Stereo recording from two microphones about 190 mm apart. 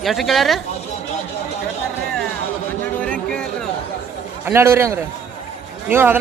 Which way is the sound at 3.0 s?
5° left (ahead or behind).